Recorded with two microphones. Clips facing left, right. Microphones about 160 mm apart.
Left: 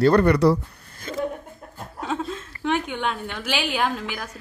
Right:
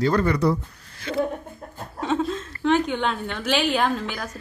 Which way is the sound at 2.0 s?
5° left (ahead or behind).